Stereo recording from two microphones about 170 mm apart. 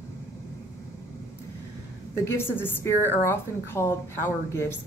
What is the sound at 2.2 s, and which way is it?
A woman's voice, 15° left (ahead or behind).